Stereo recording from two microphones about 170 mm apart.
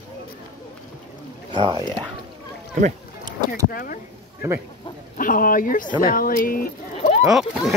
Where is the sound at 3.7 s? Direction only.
60° left (ahead or behind).